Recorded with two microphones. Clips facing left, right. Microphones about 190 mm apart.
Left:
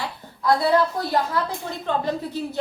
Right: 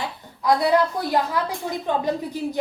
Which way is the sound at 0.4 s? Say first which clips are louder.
Even; 15° right (ahead or behind).